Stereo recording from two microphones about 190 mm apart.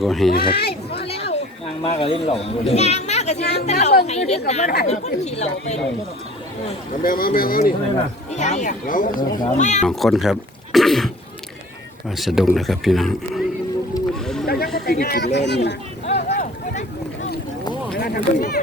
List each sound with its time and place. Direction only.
0.0 s speech: centre (ahead or behind)
0.3 s speech: 55° left (ahead or behind)
1.0 s a child's voice: 30° left (ahead or behind)
7.0 s speech: 45° left (ahead or behind)
8.3 s speech: 40° left (ahead or behind)
9.8 s speech: centre (ahead or behind)
12.1 s speech: centre (ahead or behind)
14.4 s a sound: 55° left (ahead or behind)
14.8 s speech: 55° left (ahead or behind)
16.0 s a sound: 35° left (ahead or behind)
17.9 s speech: 50° left (ahead or behind)